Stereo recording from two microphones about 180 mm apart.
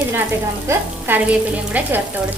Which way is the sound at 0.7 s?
10° right (ahead or behind).